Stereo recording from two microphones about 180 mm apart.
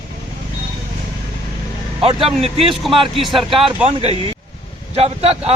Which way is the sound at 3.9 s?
30° right (ahead or behind).